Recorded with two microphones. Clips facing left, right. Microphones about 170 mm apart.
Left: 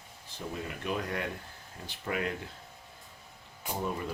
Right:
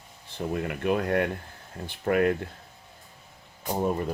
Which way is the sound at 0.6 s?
60° right (ahead or behind).